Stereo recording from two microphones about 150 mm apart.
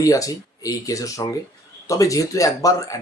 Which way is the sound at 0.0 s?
20° left (ahead or behind).